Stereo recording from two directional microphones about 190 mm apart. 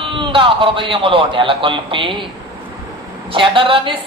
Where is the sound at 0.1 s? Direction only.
25° right (ahead or behind).